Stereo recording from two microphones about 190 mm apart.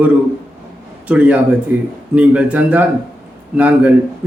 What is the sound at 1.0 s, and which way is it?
A man's voice, 5° right (ahead or behind).